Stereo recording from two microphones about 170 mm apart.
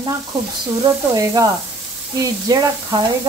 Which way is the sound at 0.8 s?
20° right (ahead or behind).